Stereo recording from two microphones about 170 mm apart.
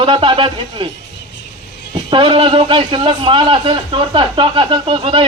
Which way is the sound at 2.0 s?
30° right (ahead or behind).